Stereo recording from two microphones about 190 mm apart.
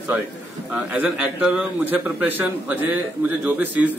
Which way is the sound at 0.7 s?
5° right (ahead or behind).